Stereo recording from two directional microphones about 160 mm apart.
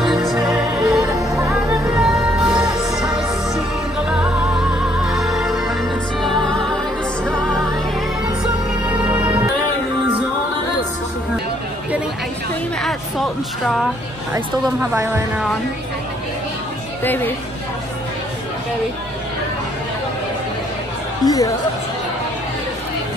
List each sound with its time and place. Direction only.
0.0 s music: centre (ahead or behind)
9.1 s music: 10° right (ahead or behind)
12.8 s a sound: centre (ahead or behind)
14.3 s speech: 15° right (ahead or behind)
17.0 s speech: 10° left (ahead or behind)
21.2 s speech: 20° left (ahead or behind)